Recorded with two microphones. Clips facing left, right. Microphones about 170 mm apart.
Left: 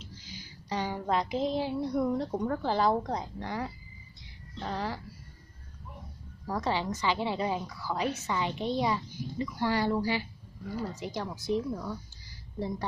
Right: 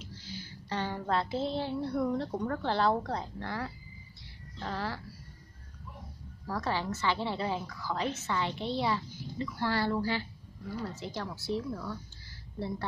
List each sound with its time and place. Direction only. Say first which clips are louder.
0.1 s a sound: right 3 dB; 15° left (ahead or behind)
4.6 s a woman's voice: left 2 dB; 15° left (ahead or behind)
6.4 s a woman's voice: left 2 dB; 20° left (ahead or behind)